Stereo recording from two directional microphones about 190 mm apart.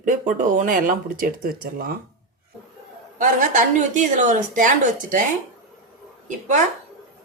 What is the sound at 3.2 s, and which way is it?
A woman's voice, 40° right (ahead or behind).